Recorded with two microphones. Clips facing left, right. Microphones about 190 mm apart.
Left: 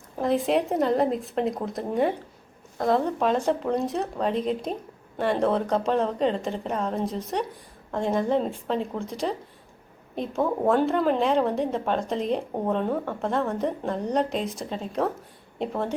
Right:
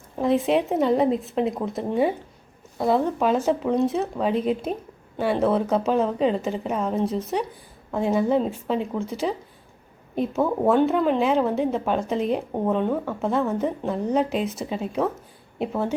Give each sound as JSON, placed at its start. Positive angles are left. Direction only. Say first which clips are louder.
{"t": 0.2, "sound": "a woman's voice", "louder": "right 2 dB", "side_deg": 0}